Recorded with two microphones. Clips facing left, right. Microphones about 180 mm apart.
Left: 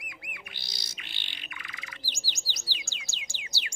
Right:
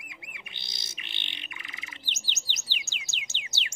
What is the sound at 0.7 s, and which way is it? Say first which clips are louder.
Music: even; 20° right (ahead or behind).